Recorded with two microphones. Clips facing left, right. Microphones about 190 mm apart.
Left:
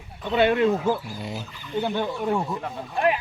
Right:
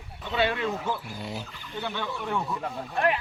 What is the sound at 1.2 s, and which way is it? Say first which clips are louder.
Speech: left 2 dB; centre (ahead or behind).